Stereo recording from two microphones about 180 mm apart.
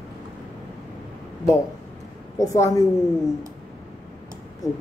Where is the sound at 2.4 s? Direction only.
20° left (ahead or behind).